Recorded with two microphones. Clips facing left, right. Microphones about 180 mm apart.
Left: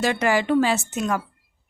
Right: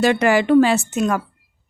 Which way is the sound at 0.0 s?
65° right (ahead or behind).